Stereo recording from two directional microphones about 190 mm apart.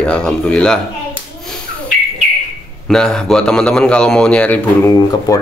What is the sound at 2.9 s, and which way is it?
A man's voice, 5° left (ahead or behind).